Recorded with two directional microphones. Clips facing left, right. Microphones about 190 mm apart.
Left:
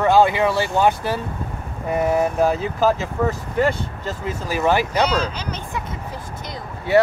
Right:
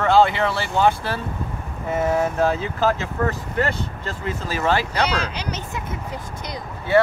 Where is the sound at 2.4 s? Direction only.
15° left (ahead or behind).